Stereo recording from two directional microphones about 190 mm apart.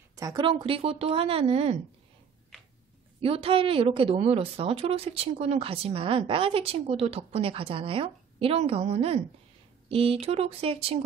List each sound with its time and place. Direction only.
0.1 s speech: 20° right (ahead or behind)
3.2 s a woman's voice: 30° right (ahead or behind)